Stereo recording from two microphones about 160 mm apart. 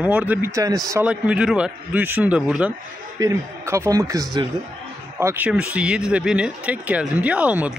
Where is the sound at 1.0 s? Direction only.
5° right (ahead or behind).